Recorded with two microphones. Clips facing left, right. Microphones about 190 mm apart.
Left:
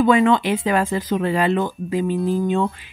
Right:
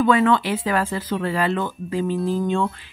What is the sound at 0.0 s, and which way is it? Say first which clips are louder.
Speech: left 2 dB; 15° left (ahead or behind).